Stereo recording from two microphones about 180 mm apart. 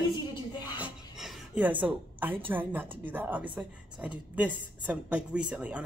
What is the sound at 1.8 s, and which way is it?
Speech, 10° right (ahead or behind).